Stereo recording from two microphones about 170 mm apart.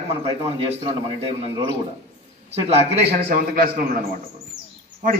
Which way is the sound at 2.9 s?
65° right (ahead or behind).